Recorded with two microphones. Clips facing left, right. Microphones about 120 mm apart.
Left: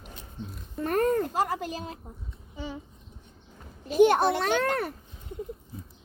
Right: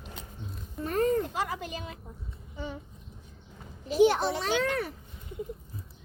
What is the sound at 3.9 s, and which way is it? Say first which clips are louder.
A child's voice: left 3 dB; 55° left (ahead or behind).